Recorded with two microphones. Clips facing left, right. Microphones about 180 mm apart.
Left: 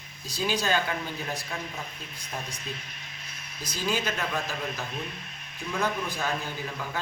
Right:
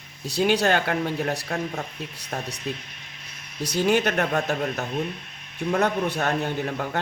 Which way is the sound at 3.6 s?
65° right (ahead or behind).